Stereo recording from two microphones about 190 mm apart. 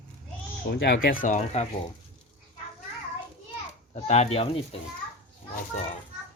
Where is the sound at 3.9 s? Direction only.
35° left (ahead or behind).